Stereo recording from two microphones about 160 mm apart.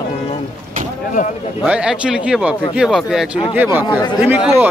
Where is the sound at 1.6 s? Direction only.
5° right (ahead or behind).